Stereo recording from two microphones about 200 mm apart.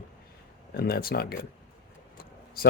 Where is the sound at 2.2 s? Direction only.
50° left (ahead or behind).